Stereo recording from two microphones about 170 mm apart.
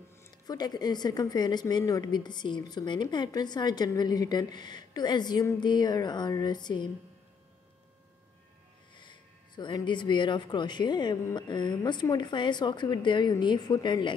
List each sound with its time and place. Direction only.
0.5 s a woman's voice: 25° left (ahead or behind)
8.9 s a woman's voice: 25° left (ahead or behind)